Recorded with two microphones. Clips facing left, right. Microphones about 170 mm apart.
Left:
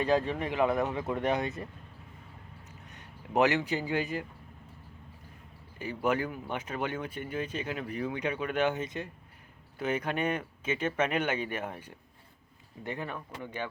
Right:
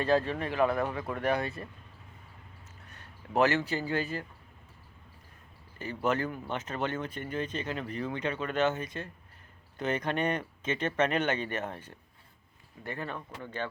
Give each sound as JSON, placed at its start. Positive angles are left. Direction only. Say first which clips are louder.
{"t": 0.0, "sound": "speech", "louder": "even", "side_deg": 15}
{"t": 2.9, "sound": "speech", "louder": "left 1 dB", "side_deg": 15}
{"t": 5.8, "sound": "speech", "louder": "even", "side_deg": 10}
{"t": 9.7, "sound": "speech", "louder": "even", "side_deg": 10}